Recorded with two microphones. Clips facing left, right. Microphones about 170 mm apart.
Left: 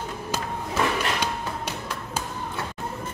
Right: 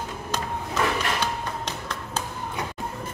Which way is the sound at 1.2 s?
10° left (ahead or behind).